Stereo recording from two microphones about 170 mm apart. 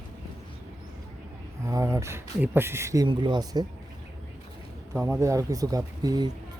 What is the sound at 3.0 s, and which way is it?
Speech, 25° right (ahead or behind).